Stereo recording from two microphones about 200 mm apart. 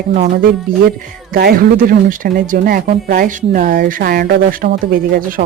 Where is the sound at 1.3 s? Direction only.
50° right (ahead or behind).